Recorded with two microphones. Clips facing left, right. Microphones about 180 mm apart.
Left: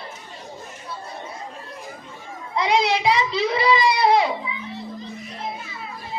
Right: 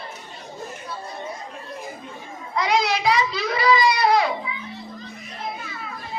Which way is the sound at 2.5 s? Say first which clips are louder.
Left 1 dB; 25° left (ahead or behind).